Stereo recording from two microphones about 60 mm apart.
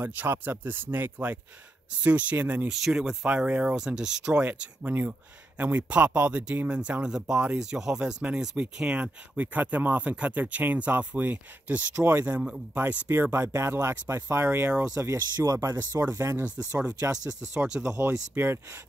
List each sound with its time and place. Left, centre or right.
0.0 s speech: right
2.7 s speech: centre
3.3 s speech: right
3.7 s speech: centre
4.4 s speech: right
13.3 s speech: right
14.7 s speech: right
15.0 s speech: right
16.4 s speech: centre
17.0 s speech: right
17.8 s speech: right